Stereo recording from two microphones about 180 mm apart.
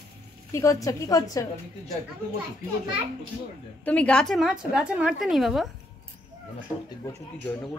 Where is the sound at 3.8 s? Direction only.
5° left (ahead or behind).